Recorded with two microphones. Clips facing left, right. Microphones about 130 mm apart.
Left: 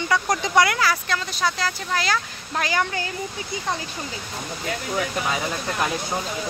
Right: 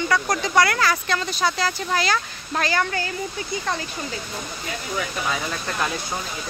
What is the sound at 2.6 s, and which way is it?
Speech, 15° left (ahead or behind).